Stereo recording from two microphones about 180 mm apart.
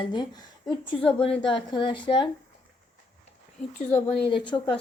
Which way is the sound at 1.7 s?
25° left (ahead or behind).